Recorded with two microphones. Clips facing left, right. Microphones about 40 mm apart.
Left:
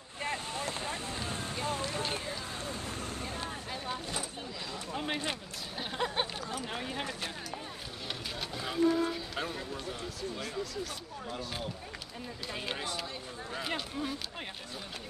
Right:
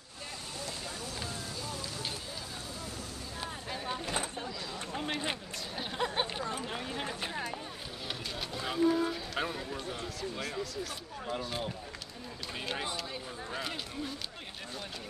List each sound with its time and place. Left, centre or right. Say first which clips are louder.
0.2 s vehicle: left 7 dB; left
3.7 s a sound: right 2 dB; centre
4.9 s run: left 1 dB; centre
5.8 s a sound: even; centre
6.7 s speech: even; centre
7.1 s speech: right 1 dB; centre
8.4 s speech: even; centre